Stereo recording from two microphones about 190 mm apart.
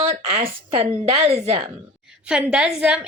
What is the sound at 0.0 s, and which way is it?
A woman's voice, 30° right (ahead or behind).